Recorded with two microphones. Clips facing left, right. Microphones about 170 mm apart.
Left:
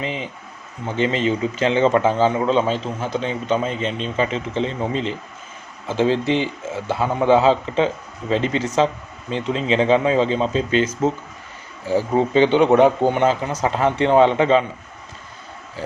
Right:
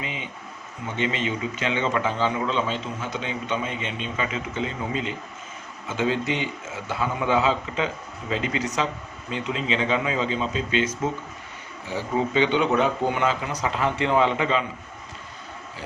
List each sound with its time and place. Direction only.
0.0 s a man's voice: 35° left (ahead or behind)
11.9 s a man's voice: 35° left (ahead or behind)
12.5 s speech: 65° left (ahead or behind)
13.0 s speech: 30° left (ahead or behind)